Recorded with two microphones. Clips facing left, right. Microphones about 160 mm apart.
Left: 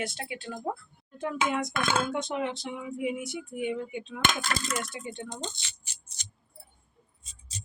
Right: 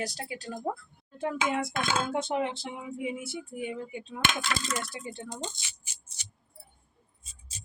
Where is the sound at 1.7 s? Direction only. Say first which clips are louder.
Left 2 dB; 55° left (ahead or behind).